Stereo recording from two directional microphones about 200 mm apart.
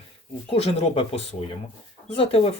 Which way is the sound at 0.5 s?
30° left (ahead or behind).